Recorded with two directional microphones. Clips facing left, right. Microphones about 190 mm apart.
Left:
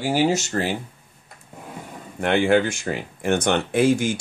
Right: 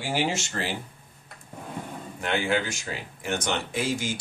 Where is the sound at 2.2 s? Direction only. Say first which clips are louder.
Left 8 dB; 55° left (ahead or behind).